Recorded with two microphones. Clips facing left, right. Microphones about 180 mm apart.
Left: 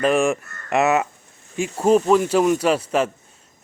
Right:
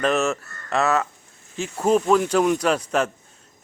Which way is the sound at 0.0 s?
10° left (ahead or behind).